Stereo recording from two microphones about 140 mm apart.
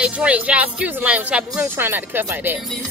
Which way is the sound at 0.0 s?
10° right (ahead or behind).